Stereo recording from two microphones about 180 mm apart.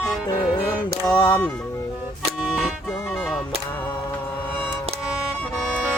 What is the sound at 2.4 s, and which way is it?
Music, 5° right (ahead or behind).